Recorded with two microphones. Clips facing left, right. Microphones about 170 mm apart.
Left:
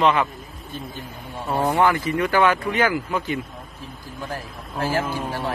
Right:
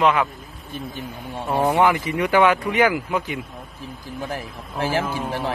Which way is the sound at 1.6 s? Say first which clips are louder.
Right 1 dB; 15° right (ahead or behind).